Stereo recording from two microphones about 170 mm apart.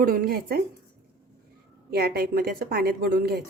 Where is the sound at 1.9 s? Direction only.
65° right (ahead or behind).